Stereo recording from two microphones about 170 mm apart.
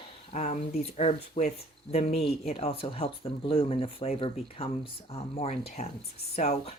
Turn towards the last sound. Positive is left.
turn(degrees=40)  # may be behind; listen again after turning